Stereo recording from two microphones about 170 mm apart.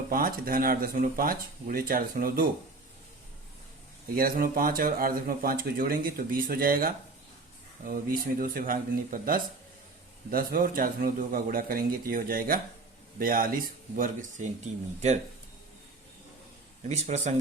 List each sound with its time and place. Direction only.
0.1 s speech: 55° right (ahead or behind)
4.1 s speech: 60° right (ahead or behind)
8.4 s speech: 55° right (ahead or behind)
16.8 s speech: 45° right (ahead or behind)